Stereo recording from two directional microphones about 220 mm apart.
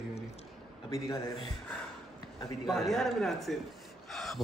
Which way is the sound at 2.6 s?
Centre (ahead or behind).